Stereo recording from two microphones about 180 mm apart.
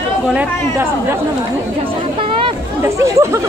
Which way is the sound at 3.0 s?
15° right (ahead or behind).